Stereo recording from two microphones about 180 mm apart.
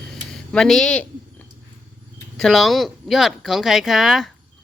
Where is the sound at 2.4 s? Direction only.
Centre (ahead or behind).